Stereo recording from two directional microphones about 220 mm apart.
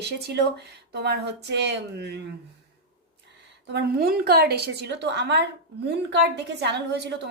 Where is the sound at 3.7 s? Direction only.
45° right (ahead or behind).